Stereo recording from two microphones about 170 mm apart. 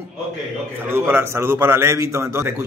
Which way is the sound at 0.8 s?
15° right (ahead or behind).